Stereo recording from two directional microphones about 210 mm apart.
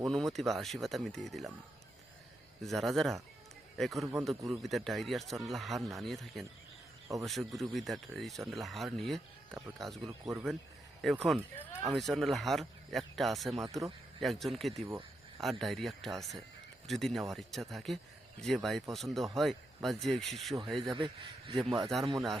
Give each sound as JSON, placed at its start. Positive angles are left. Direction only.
{"t": 0.0, "sound": "speech", "side_deg": 0}
{"t": 2.6, "sound": "speech", "side_deg": 0}
{"t": 20.9, "sound": "speech", "side_deg": -25}
{"t": 21.8, "sound": "speech", "side_deg": 0}